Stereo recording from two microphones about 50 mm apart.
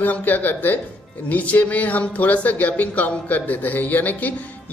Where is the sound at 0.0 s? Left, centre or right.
Left.